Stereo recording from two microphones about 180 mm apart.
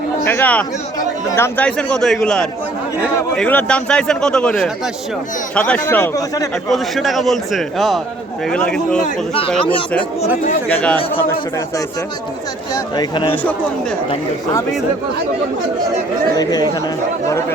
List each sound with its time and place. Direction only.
0.3 s speech: 10° left (ahead or behind)
0.9 s speech: 20° left (ahead or behind)
1.5 s a man's voice: 5° left (ahead or behind)
6.7 s a man's voice: centre (ahead or behind)
10.7 s speech: 10° left (ahead or behind)
12.7 s speech: 25° left (ahead or behind)
13.3 s speech: 10° left (ahead or behind)
16.4 s speech: 20° left (ahead or behind)